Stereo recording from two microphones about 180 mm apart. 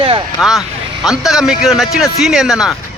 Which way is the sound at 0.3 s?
Centre (ahead or behind).